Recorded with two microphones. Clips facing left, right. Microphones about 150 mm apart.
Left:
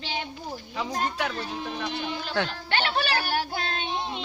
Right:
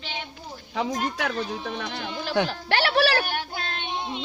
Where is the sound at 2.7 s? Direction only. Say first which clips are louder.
Right 5 dB; 75° right (ahead or behind).